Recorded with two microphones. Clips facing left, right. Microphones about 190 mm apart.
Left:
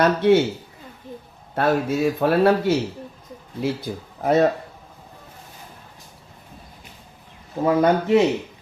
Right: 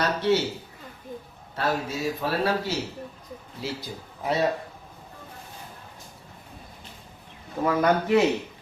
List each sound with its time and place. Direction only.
0.0 s speech: 55° left (ahead or behind)
1.5 s speech: 55° left (ahead or behind)
7.6 s speech: 25° left (ahead or behind)